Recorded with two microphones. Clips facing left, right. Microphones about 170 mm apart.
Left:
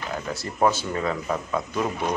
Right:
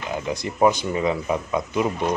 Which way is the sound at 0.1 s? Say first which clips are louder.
Right 6 dB; 15° right (ahead or behind).